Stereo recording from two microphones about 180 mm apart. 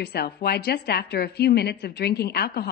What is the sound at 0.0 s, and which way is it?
A woman's voice, 65° left (ahead or behind).